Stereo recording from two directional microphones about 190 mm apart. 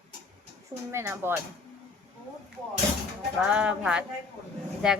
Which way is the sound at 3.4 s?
5° right (ahead or behind).